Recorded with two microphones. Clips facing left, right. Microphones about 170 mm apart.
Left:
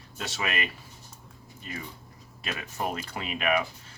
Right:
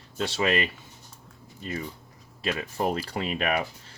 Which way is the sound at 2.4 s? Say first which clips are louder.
Right 5 dB; 30° right (ahead or behind).